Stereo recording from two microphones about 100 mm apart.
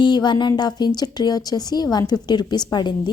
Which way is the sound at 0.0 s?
50° left (ahead or behind).